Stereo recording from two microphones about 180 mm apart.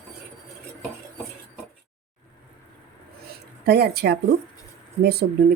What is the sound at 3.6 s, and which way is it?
Speech, 65° right (ahead or behind).